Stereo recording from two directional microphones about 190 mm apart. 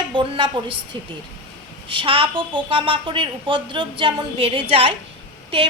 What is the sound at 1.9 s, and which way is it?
A woman's voice, 30° right (ahead or behind).